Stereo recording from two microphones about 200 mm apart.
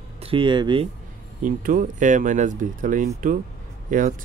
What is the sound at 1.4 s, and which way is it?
Speech, 40° right (ahead or behind).